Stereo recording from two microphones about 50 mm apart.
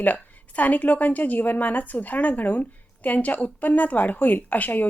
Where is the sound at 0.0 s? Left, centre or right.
Left.